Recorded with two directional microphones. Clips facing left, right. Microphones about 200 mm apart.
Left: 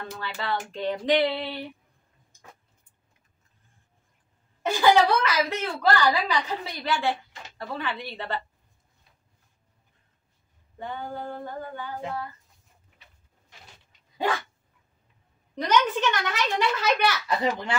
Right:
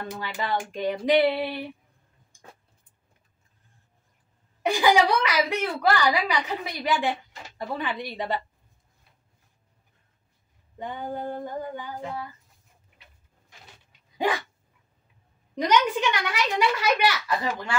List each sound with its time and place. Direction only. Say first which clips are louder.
0.1 s a woman's voice: right 1 dB; 15° right (ahead or behind)
4.6 s a woman's voice: left 1 dB; 15° right (ahead or behind)
10.8 s a woman's voice: right 2 dB; 15° right (ahead or behind)
14.1 s dog: right 1 dB; 15° right (ahead or behind)
15.5 s a woman's voice: right 1 dB; 10° right (ahead or behind)
17.4 s speech: left 3 dB; 20° left (ahead or behind)